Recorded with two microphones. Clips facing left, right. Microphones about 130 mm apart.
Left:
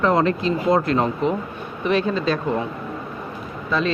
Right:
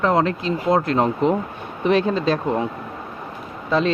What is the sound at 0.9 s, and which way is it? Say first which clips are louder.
Speech: right 2 dB; 25° right (ahead or behind).